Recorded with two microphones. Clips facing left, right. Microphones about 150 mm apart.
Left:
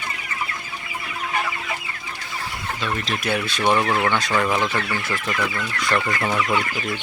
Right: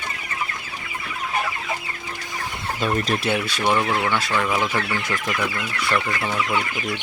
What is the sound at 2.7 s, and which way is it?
Speech, 45° right (ahead or behind).